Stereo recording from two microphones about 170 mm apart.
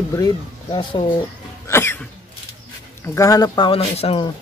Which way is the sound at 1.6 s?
15° left (ahead or behind).